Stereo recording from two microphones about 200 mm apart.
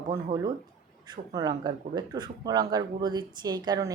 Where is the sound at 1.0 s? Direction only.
20° right (ahead or behind).